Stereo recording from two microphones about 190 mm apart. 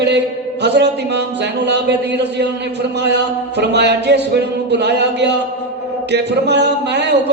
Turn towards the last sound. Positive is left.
turn(degrees=-65)  # may be behind; listen again after turning